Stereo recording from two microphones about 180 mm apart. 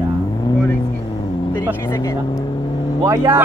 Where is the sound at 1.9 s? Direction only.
20° left (ahead or behind).